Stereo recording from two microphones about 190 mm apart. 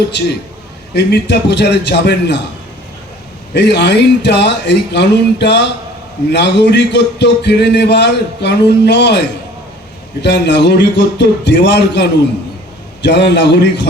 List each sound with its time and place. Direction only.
0.9 s a man's voice: 65° left (ahead or behind)
3.5 s a man's voice: 65° left (ahead or behind)